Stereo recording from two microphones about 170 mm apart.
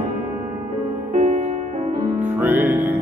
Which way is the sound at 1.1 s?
40° right (ahead or behind).